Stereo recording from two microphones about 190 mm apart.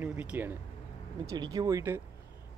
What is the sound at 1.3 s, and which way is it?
Speech, 20° right (ahead or behind).